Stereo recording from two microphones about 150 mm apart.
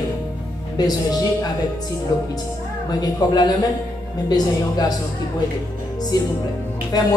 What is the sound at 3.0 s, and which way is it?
Speech, 25° left (ahead or behind).